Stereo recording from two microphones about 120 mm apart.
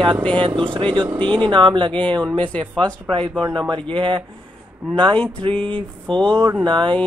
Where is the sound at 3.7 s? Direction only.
45° right (ahead or behind).